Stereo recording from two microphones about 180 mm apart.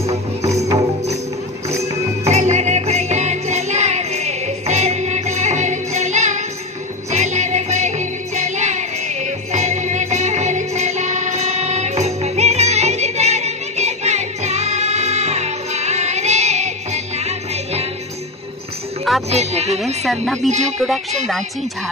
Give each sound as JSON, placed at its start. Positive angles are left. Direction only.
{"t": 1.8, "sound": "music", "side_deg": -35}
{"t": 19.2, "sound": "music", "side_deg": -35}
{"t": 20.3, "sound": "speech", "side_deg": -40}
{"t": 20.8, "sound": "speech", "side_deg": 0}